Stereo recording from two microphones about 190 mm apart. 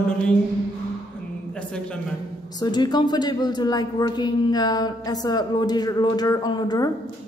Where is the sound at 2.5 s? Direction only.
20° left (ahead or behind).